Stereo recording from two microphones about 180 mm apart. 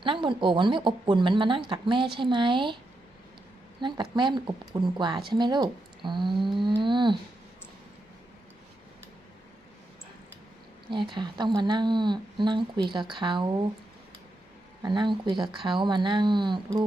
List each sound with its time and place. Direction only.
0.0 s a woman's voice: 25° right (ahead or behind)
3.8 s a woman's voice: 25° right (ahead or behind)
10.9 s a woman's voice: 25° right (ahead or behind)
14.8 s a woman's voice: 25° right (ahead or behind)